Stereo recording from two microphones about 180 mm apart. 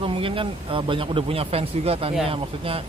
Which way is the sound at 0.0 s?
30° right (ahead or behind).